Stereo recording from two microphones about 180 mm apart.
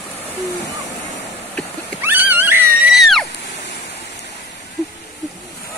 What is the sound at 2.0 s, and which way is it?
Cat, 10° right (ahead or behind).